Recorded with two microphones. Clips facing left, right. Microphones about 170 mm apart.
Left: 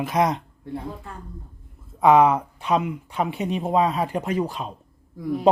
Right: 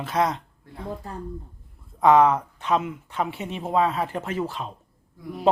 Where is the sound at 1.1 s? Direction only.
40° right (ahead or behind).